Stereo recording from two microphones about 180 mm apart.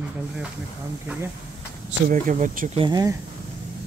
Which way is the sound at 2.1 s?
45° right (ahead or behind).